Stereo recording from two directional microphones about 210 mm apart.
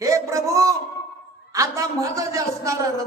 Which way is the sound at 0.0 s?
15° right (ahead or behind).